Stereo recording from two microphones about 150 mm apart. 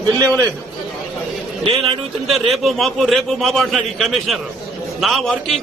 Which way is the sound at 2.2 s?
Centre (ahead or behind).